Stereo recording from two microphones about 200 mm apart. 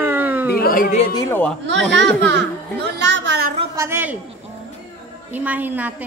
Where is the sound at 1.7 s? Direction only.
65° right (ahead or behind).